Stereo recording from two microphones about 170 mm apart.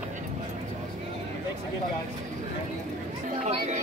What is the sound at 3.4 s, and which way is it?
Chatter, 45° right (ahead or behind).